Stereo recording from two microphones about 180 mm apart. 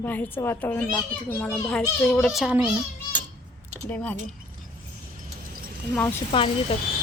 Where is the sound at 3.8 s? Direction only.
10° left (ahead or behind).